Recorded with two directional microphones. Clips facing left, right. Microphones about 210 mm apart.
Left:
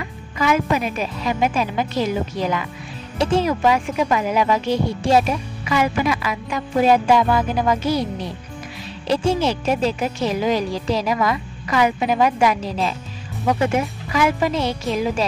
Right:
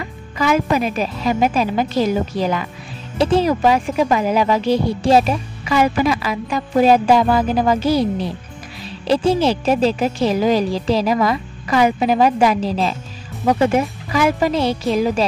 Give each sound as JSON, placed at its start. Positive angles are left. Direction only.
{"t": 0.0, "sound": "speech", "side_deg": -35}
{"t": 9.0, "sound": "speech", "side_deg": -35}